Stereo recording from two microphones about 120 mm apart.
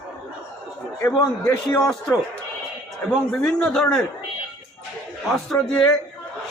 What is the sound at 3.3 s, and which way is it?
Speech, 5° left (ahead or behind).